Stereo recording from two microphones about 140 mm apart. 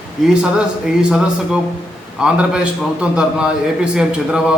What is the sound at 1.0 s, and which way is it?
A man's voice, 5° right (ahead or behind).